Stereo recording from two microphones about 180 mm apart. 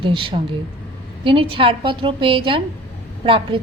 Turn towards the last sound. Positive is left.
turn(degrees=-30)  # may be behind; listen again after turning